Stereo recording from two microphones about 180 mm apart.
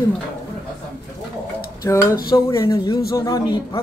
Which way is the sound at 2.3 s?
15° left (ahead or behind).